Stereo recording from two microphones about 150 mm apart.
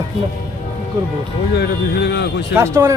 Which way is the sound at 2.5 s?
20° right (ahead or behind).